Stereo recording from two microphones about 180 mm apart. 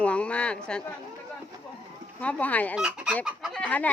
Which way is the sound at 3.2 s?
5° right (ahead or behind).